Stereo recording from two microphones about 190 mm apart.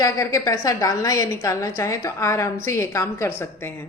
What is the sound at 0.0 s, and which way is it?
A woman's voice, 15° left (ahead or behind).